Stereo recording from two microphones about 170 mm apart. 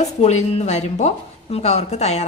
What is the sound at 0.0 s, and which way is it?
A woman's voice, 40° left (ahead or behind).